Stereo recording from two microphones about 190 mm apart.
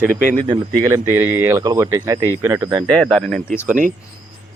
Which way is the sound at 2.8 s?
5° left (ahead or behind).